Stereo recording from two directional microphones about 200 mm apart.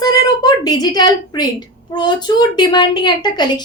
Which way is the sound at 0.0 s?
20° left (ahead or behind).